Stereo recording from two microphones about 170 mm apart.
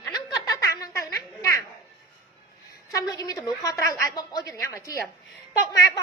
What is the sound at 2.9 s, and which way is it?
A woman's voice, 20° left (ahead or behind).